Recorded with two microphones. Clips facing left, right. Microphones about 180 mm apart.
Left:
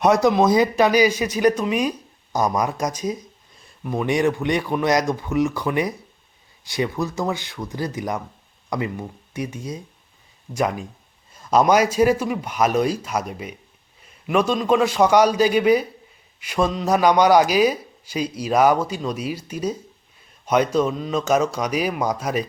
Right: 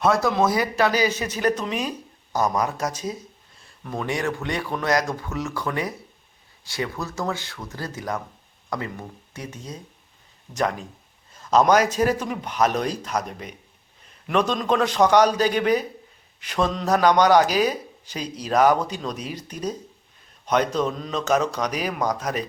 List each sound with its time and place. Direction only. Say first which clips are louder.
0.0 s a man's voice: left 4 dB; 20° left (ahead or behind)